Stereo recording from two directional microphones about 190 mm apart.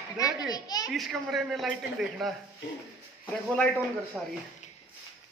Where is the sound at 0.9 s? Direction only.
Centre (ahead or behind).